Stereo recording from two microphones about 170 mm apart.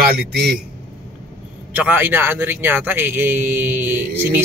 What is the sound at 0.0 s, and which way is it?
Speech, 70° right (ahead or behind).